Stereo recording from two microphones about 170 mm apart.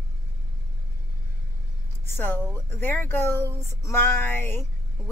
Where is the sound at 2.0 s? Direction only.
15° left (ahead or behind).